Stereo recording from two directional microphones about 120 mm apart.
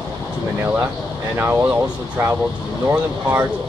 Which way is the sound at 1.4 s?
15° right (ahead or behind).